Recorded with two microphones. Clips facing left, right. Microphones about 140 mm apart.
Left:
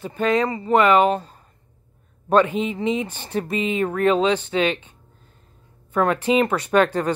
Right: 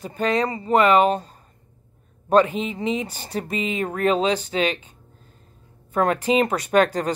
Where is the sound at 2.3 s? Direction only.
35° right (ahead or behind).